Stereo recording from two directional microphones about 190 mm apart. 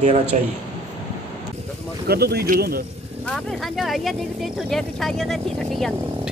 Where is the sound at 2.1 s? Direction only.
55° right (ahead or behind).